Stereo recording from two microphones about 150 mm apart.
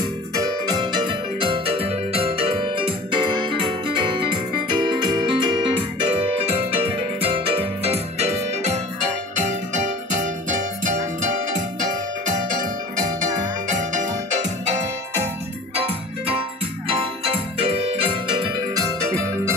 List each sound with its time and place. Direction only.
0.0 s music: 25° right (ahead or behind)
3.8 s keyboard: 30° right (ahead or behind); by 8.8 s 45° right (ahead or behind)
9.3 s music: 55° right (ahead or behind)
12.4 s music: 60° right (ahead or behind)
15.7 s music: 40° right (ahead or behind)